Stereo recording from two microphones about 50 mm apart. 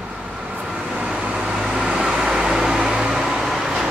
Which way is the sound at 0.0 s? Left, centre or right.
Right.